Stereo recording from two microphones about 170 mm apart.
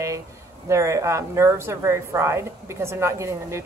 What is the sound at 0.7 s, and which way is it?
Speech, 15° right (ahead or behind).